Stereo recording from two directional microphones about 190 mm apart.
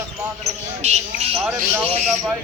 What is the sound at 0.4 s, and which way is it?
Speech, 35° right (ahead or behind).